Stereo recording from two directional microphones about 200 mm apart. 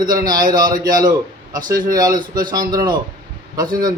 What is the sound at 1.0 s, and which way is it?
A man's voice, 20° right (ahead or behind).